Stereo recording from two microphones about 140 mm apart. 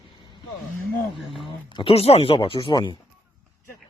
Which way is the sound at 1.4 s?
40° left (ahead or behind).